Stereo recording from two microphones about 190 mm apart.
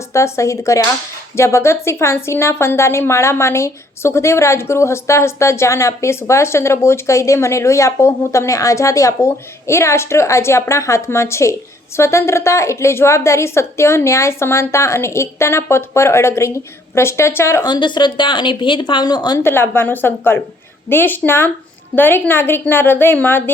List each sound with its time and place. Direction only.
0.1 s a woman's voice: 15° left (ahead or behind)